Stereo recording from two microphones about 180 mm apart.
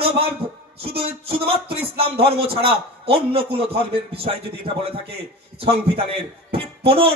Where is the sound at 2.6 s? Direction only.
30° right (ahead or behind).